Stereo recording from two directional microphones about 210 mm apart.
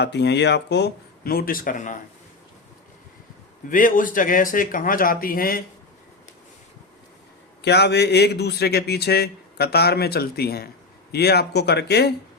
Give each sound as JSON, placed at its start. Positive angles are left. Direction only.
{"t": 0.0, "sound": "speech", "side_deg": 55}
{"t": 3.7, "sound": "speech", "side_deg": 40}
{"t": 7.6, "sound": "speech", "side_deg": 55}